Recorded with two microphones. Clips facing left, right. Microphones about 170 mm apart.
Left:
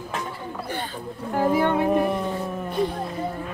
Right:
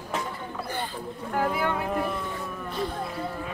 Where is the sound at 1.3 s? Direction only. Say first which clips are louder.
Left 6 dB; 20° left (ahead or behind).